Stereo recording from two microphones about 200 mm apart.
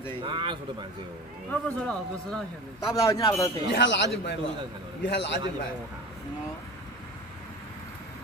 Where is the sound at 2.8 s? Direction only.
15° left (ahead or behind).